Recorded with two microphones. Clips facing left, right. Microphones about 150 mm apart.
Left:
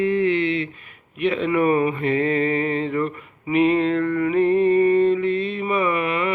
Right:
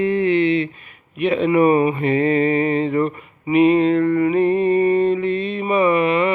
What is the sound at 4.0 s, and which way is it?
Music, 30° right (ahead or behind).